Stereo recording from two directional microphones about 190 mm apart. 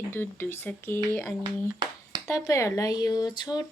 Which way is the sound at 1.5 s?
25° right (ahead or behind).